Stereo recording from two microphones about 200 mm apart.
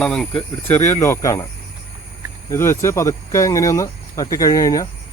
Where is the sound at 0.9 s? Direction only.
15° left (ahead or behind).